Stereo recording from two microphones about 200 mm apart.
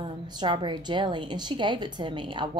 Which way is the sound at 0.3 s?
25° right (ahead or behind).